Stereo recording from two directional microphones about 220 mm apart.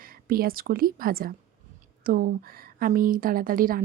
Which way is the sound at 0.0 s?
40° right (ahead or behind).